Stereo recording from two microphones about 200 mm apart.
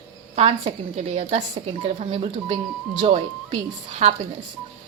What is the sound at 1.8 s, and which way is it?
A woman's voice, 30° right (ahead or behind).